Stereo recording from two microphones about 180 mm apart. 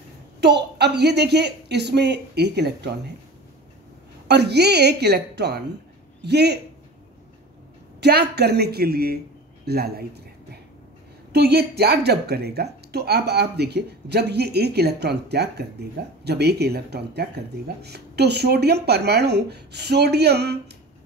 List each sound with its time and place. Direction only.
0.4 s a woman's voice: 70° right (ahead or behind)
4.3 s a woman's voice: 65° right (ahead or behind)
8.0 s speech: 65° right (ahead or behind)